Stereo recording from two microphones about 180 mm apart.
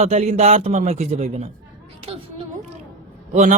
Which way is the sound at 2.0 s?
35° right (ahead or behind).